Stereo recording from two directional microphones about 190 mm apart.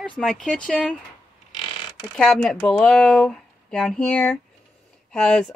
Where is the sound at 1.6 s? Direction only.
25° left (ahead or behind).